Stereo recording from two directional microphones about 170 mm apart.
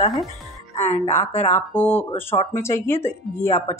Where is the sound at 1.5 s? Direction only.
10° left (ahead or behind).